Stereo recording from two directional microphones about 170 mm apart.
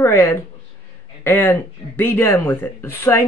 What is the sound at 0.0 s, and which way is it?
Speech, 15° left (ahead or behind).